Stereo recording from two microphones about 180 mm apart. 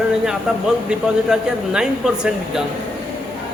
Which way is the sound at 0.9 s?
5° right (ahead or behind).